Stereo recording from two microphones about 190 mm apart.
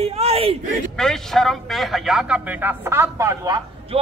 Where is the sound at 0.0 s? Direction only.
30° right (ahead or behind).